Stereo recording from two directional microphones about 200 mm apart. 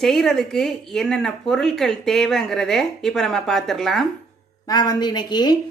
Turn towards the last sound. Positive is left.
turn(degrees=20)  # may be behind; listen again after turning